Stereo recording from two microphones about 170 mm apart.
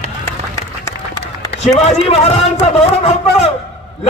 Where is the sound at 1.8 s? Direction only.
40° left (ahead or behind).